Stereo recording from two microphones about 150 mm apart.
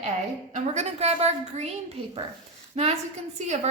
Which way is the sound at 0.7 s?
45° right (ahead or behind).